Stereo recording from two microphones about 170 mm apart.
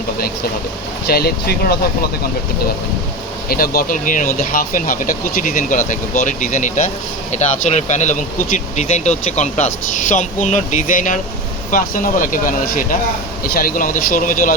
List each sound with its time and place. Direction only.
1.0 s speech: 65° left (ahead or behind)
3.5 s speech: 60° left (ahead or behind)